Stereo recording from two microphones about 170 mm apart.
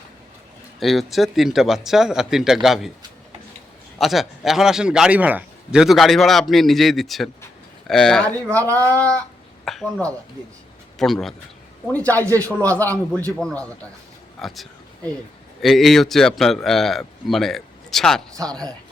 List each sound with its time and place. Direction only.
0.8 s a man's voice: centre (ahead or behind)
3.9 s a man's voice: centre (ahead or behind)
12.4 s speech: 15° right (ahead or behind)
12.6 s a man's voice: 10° left (ahead or behind)